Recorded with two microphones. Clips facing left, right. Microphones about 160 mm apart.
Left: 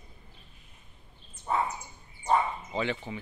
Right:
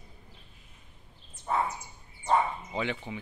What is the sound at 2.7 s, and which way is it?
Speech, 10° right (ahead or behind).